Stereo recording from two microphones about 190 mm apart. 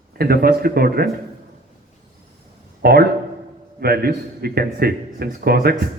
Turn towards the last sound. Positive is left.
turn(degrees=-55)  # may be behind; listen again after turning